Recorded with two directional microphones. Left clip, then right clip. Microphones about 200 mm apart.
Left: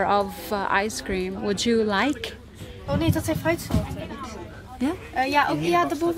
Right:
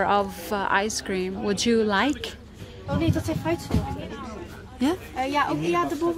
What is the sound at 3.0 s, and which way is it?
Speech, 50° left (ahead or behind).